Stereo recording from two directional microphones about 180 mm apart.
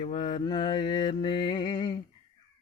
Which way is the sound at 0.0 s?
30° left (ahead or behind).